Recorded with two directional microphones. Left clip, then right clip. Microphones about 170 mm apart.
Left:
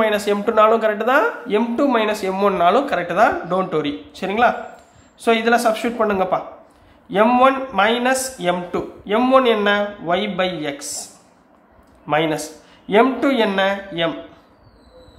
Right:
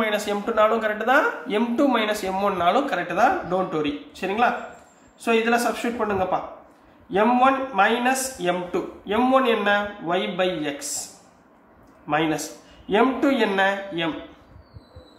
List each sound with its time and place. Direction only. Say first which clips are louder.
0.0 s a man's voice: left 6 dB; 35° left (ahead or behind)
12.1 s speech: left 4 dB; 35° left (ahead or behind)